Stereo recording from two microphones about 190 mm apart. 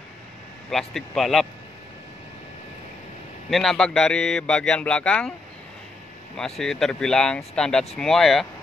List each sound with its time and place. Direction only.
0.7 s speech: centre (ahead or behind)
3.4 s speech: centre (ahead or behind)
6.3 s speech: centre (ahead or behind)